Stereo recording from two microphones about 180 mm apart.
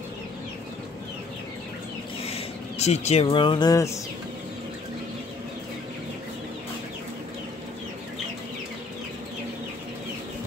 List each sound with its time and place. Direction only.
2.2 s speech: 35° left (ahead or behind); by 3.9 s 20° left (ahead or behind)